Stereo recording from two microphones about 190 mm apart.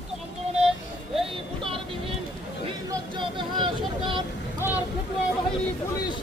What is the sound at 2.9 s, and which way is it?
Vehicle, 25° right (ahead or behind).